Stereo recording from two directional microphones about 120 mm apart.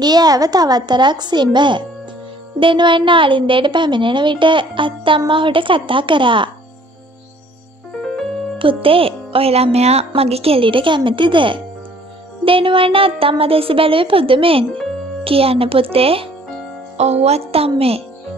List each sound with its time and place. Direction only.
0.0 s a woman's voice: 35° right (ahead or behind)
8.5 s a woman's voice: 50° right (ahead or behind)
16.9 s a woman's voice: 65° right (ahead or behind)